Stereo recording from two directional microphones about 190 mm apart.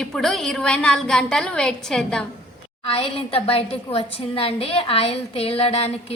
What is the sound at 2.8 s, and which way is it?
A woman's voice, 30° left (ahead or behind).